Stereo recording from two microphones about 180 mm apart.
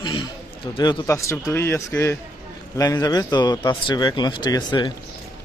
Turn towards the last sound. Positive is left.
turn(degrees=25)  # may be behind; listen again after turning